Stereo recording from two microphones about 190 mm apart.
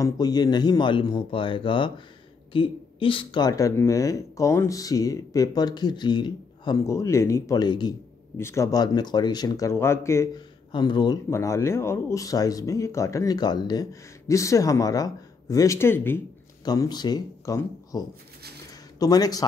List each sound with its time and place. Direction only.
0.0 s speech: 20° left (ahead or behind)